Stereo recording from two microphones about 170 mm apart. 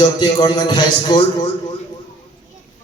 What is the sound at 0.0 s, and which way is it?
A man's voice, 25° left (ahead or behind).